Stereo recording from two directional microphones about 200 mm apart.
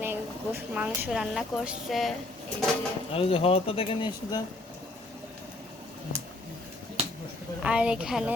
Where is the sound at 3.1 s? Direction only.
30° left (ahead or behind).